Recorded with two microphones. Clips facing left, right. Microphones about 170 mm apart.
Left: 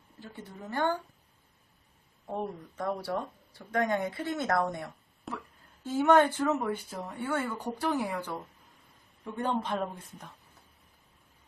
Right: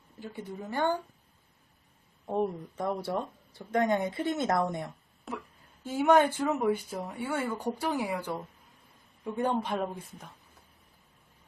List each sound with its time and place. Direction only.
0.2 s speech: 15° right (ahead or behind)
2.3 s speech: 20° right (ahead or behind)
5.3 s speech: centre (ahead or behind)
5.8 s speech: 10° right (ahead or behind)